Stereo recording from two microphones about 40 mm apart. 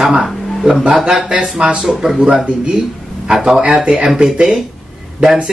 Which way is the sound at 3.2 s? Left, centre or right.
Centre.